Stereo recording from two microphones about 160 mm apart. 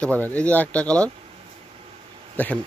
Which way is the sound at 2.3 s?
10° left (ahead or behind).